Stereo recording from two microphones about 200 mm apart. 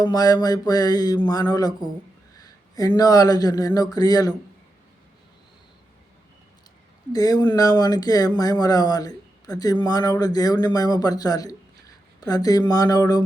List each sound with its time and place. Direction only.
0.0 s speech: 20° left (ahead or behind)
7.1 s speech: 20° left (ahead or behind)